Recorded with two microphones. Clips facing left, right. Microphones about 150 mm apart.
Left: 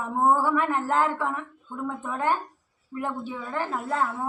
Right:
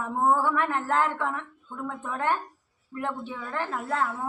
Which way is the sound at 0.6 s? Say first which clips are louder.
Left 1 dB; 10° left (ahead or behind).